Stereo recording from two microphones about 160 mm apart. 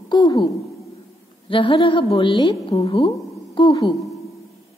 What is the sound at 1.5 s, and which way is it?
A woman's voice, 35° left (ahead or behind).